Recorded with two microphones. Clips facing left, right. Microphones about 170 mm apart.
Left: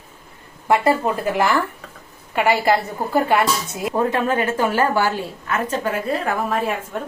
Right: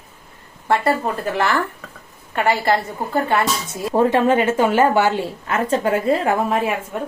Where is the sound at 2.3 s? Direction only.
10° left (ahead or behind).